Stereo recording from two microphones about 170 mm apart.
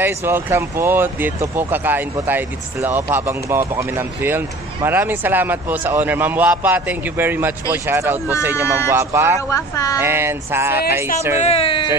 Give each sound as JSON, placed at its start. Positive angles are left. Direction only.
{"t": 0.0, "sound": "speech", "side_deg": -15}
{"t": 9.5, "sound": "speech", "side_deg": 20}
{"t": 9.9, "sound": "speech", "side_deg": -15}
{"t": 11.4, "sound": "speech", "side_deg": 35}